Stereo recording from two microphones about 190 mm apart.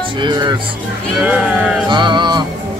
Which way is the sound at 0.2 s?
25° right (ahead or behind).